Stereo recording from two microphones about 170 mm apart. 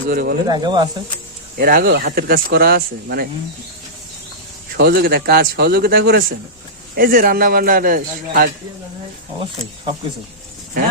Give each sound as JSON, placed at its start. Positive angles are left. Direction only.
{"t": 0.1, "sound": "speech", "side_deg": -60}
{"t": 0.4, "sound": "speech", "side_deg": -25}
{"t": 1.5, "sound": "speech", "side_deg": -60}
{"t": 4.8, "sound": "a man's voice", "side_deg": -70}